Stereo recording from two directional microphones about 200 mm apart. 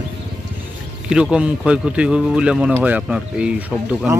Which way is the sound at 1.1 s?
5° right (ahead or behind).